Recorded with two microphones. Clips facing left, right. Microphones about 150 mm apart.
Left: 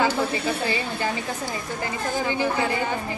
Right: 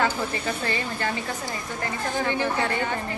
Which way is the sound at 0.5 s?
10° left (ahead or behind).